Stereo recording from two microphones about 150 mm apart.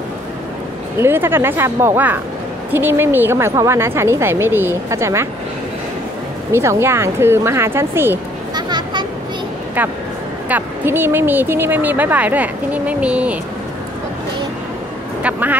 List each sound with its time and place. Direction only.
0.9 s speech: 15° right (ahead or behind)
6.5 s speech: 15° right (ahead or behind)
8.5 s vehicle: 30° right (ahead or behind)
9.8 s speech: 10° right (ahead or behind)